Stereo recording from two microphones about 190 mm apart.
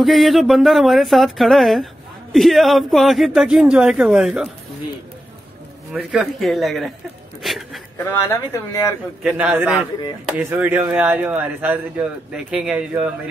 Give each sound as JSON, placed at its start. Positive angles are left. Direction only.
{"t": 0.0, "sound": "speech", "side_deg": 0}
{"t": 5.9, "sound": "speech", "side_deg": 0}
{"t": 7.4, "sound": "a sound", "side_deg": 0}
{"t": 8.1, "sound": "speech", "side_deg": 15}
{"t": 9.2, "sound": "speech", "side_deg": -10}